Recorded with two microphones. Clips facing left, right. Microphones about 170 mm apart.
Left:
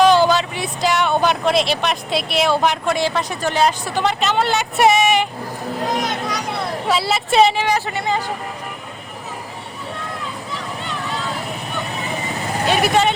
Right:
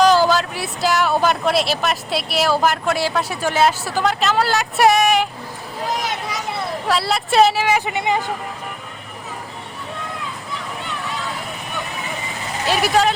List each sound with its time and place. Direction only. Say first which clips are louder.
0.0 s speech: left 1 dB; centre (ahead or behind)
6.0 s vehicle: left 3 dB; 5° right (ahead or behind)
6.8 s speech: even; centre (ahead or behind)
7.9 s speech: right 1 dB; 20° right (ahead or behind)
12.6 s speech: even; centre (ahead or behind)